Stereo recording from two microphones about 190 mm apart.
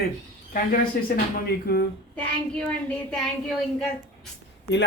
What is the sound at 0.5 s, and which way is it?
Speech, 50° left (ahead or behind).